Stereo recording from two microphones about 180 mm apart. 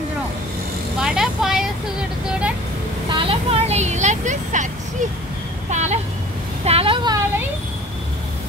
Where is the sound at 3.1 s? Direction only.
30° right (ahead or behind).